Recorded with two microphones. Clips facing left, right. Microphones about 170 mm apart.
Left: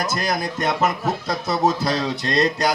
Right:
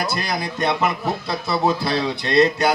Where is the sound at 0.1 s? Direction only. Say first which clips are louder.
Left 1 dB; 45° left (ahead or behind).